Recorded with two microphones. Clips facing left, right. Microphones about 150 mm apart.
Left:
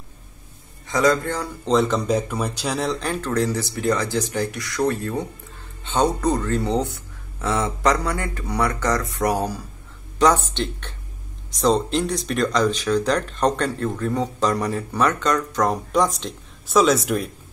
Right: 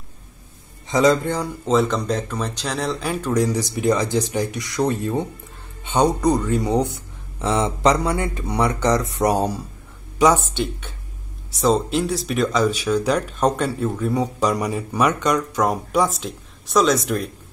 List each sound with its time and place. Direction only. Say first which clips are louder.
0.8 s speech: right 2 dB; 20° right (ahead or behind)
1.7 s speech: left 1 dB; centre (ahead or behind); by 9.6 s 25° right (ahead or behind)
10.1 s speech: right 1 dB; 10° right (ahead or behind)